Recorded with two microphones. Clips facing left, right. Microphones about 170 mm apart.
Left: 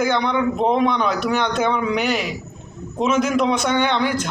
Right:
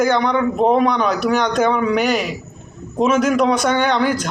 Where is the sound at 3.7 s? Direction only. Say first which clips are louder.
Right 2 dB; 45° right (ahead or behind).